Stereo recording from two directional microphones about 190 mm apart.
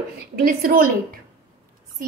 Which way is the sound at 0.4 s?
50° right (ahead or behind).